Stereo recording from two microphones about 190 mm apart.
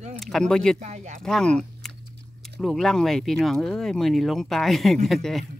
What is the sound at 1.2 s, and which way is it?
Speech, 5° left (ahead or behind).